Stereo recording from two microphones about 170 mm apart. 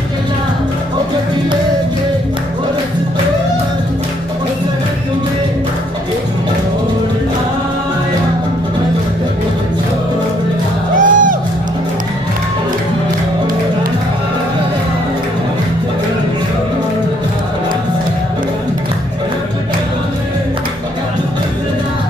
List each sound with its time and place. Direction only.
11.0 s music: 50° right (ahead or behind)